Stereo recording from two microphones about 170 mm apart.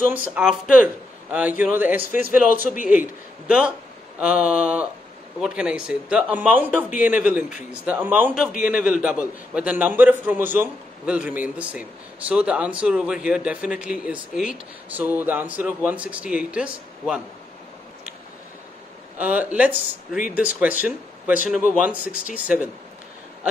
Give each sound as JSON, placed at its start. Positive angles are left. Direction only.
{"t": 0.3, "sound": "a man's voice", "side_deg": -5}
{"t": 2.1, "sound": "a man's voice", "side_deg": 50}
{"t": 2.9, "sound": "a man's voice", "side_deg": -10}
{"t": 19.1, "sound": "a man's voice", "side_deg": -10}